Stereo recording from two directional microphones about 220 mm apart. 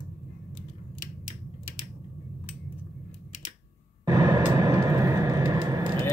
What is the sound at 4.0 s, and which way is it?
Vehicle, 15° right (ahead or behind).